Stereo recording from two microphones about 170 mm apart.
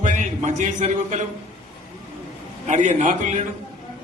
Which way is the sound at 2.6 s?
45° right (ahead or behind).